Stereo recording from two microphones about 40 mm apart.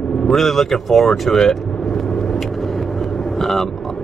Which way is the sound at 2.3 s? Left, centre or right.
Centre.